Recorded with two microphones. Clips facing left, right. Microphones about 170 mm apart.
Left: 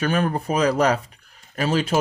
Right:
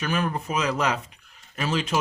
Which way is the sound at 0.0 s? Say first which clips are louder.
Left 5 dB; 35° left (ahead or behind).